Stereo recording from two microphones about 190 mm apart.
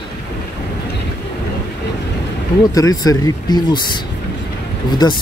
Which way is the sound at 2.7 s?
20° left (ahead or behind).